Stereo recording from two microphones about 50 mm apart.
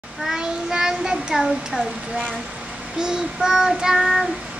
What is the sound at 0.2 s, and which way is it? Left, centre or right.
Child singing, centre.